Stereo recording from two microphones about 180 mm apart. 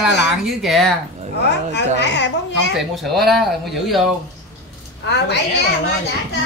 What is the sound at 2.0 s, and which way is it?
Speech, 75° left (ahead or behind).